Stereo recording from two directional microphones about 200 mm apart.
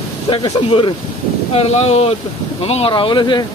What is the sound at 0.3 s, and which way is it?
Speech, 25° left (ahead or behind).